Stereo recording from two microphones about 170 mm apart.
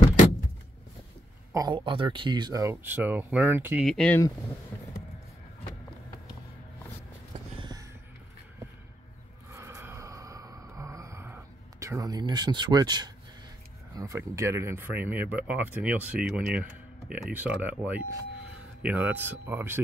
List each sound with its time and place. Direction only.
1.5 s speech: 25° right (ahead or behind)
3.8 s speech: 5° left (ahead or behind)
9.5 s a sound: 15° right (ahead or behind)
11.8 s speech: 20° right (ahead or behind)